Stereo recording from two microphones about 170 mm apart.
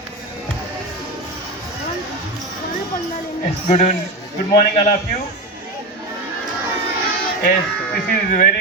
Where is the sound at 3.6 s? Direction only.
40° left (ahead or behind).